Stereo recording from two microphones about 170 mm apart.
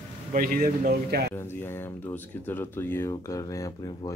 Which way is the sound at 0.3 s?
60° right (ahead or behind).